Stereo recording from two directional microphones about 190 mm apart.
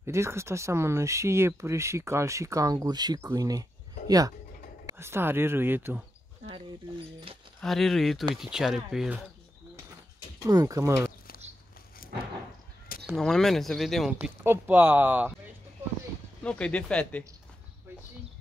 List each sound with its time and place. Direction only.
0.0 s speech: 15° right (ahead or behind)
4.8 s speech: 15° right (ahead or behind)
7.6 s speech: centre (ahead or behind)
10.4 s speech: 20° right (ahead or behind)
11.1 s a sound: 50° left (ahead or behind)
12.0 s vehicle: 50° left (ahead or behind)
13.0 s speech: centre (ahead or behind)
14.2 s speech: 10° right (ahead or behind)
16.4 s speech: 5° left (ahead or behind)